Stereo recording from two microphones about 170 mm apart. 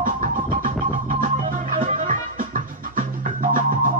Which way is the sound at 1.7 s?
50° right (ahead or behind).